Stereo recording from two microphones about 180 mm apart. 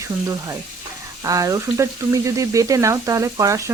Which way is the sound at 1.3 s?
20° right (ahead or behind).